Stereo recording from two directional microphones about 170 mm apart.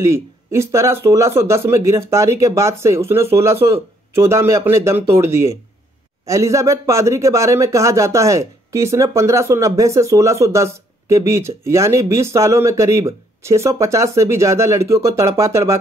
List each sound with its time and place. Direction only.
0.0 s speech: 15° right (ahead or behind)